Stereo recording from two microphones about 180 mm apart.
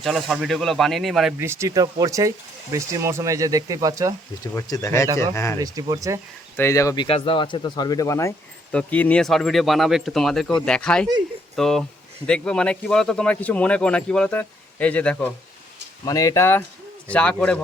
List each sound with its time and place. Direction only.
0.0 s speech: centre (ahead or behind)
1.4 s speech: 15° right (ahead or behind)
4.5 s speech: 15° left (ahead or behind)
5.5 s speech: 20° right (ahead or behind)
6.6 s speech: 15° left (ahead or behind)
16.0 s speech: 20° left (ahead or behind)